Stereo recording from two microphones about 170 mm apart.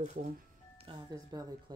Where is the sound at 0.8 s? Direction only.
30° right (ahead or behind).